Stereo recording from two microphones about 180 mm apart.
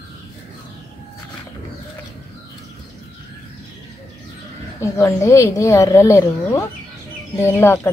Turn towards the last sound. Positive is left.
turn(degrees=15)  # may be behind; listen again after turning